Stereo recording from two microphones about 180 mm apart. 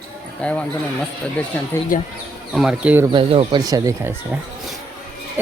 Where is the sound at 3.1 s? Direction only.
30° right (ahead or behind); by 4.4 s 15° right (ahead or behind).